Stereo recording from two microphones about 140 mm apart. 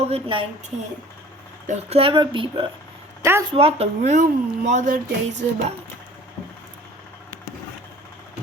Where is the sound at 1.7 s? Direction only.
45° right (ahead or behind).